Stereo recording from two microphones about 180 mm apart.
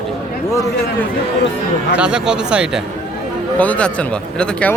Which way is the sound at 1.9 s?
5° right (ahead or behind).